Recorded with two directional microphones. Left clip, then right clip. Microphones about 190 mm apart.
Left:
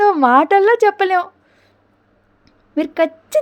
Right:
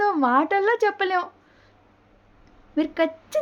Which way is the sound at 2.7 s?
35° left (ahead or behind).